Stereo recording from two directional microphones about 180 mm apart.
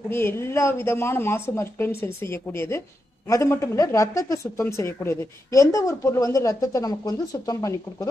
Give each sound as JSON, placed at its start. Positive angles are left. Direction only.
{"t": 0.1, "sound": "a woman's voice", "side_deg": 15}